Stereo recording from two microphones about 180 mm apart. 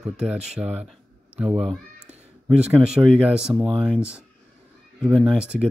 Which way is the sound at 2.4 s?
5° right (ahead or behind).